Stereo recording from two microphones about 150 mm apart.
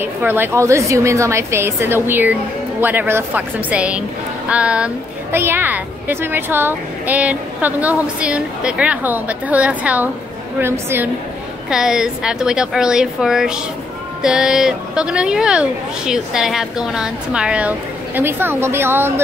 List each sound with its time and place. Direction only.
0.0 s a woman's voice: 15° right (ahead or behind)
11.7 s speech: 5° right (ahead or behind)